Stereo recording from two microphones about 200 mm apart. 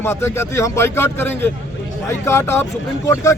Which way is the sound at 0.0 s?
10° left (ahead or behind).